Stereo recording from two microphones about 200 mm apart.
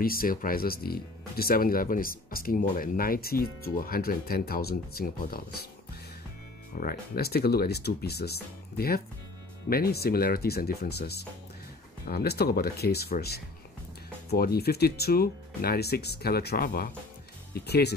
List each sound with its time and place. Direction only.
0.0 s speech: 45° left (ahead or behind)
6.7 s speech: 45° left (ahead or behind)